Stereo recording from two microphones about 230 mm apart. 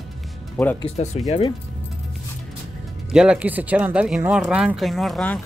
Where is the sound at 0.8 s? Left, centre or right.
Left.